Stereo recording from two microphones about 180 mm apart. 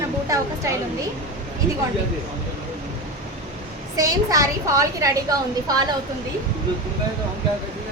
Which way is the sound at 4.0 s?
20° right (ahead or behind).